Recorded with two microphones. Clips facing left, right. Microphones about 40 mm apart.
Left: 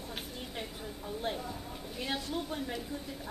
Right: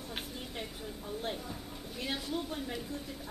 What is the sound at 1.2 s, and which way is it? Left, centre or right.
A man's voice, centre.